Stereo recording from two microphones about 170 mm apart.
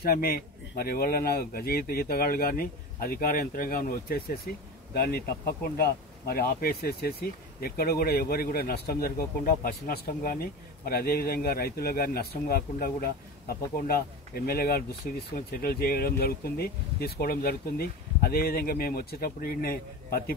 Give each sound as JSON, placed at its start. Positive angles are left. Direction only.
{"t": 0.0, "sound": "speech", "side_deg": 60}